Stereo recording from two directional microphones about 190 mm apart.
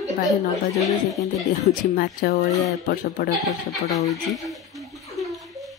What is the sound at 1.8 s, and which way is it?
Speech, 50° left (ahead or behind).